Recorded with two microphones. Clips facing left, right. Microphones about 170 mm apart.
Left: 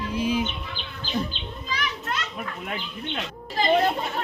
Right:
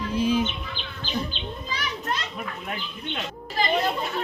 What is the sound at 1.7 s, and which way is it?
Children playing, 25° right (ahead or behind).